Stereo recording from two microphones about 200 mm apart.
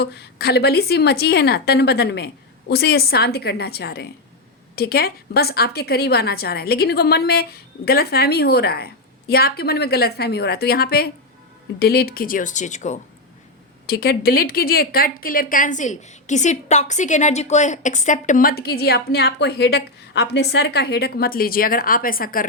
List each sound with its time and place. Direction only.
0.0 s speech: 55° left (ahead or behind); by 13.0 s 35° left (ahead or behind)
13.8 s speech: 50° left (ahead or behind)